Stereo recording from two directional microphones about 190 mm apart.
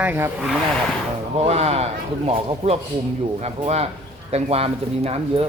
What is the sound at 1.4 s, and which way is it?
Speech, 30° right (ahead or behind).